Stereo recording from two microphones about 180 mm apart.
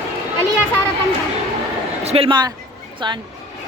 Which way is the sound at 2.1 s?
30° right (ahead or behind).